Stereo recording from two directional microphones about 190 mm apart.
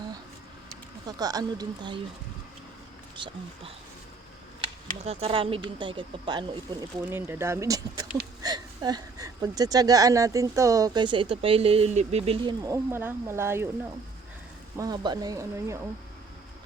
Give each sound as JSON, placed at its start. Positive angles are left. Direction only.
{"t": 1.0, "sound": "speech", "side_deg": -20}
{"t": 3.2, "sound": "speech", "side_deg": -25}
{"t": 5.0, "sound": "speech", "side_deg": -30}
{"t": 14.8, "sound": "speech", "side_deg": -20}